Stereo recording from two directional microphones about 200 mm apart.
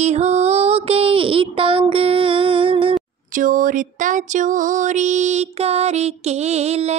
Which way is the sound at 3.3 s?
40° right (ahead or behind).